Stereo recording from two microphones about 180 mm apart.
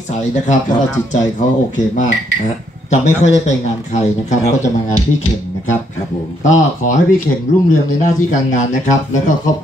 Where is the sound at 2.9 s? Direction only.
40° left (ahead or behind).